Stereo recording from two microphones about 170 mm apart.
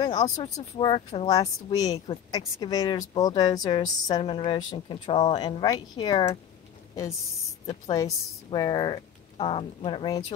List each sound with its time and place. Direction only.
0.0 s speech: 25° left (ahead or behind)
7.9 s speech: 25° left (ahead or behind)